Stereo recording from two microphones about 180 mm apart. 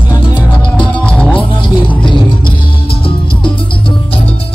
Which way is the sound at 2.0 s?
25° left (ahead or behind).